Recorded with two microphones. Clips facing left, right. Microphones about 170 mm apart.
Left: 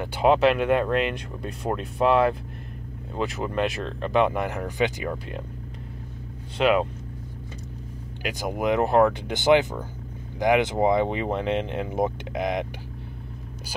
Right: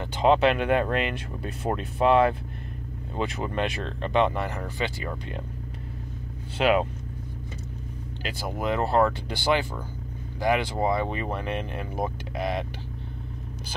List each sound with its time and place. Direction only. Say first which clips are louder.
0.0 s speech: left 1 dB; 10° left (ahead or behind)
6.6 s speech: left 1 dB; centre (ahead or behind)
8.2 s speech: left 4 dB; 15° left (ahead or behind)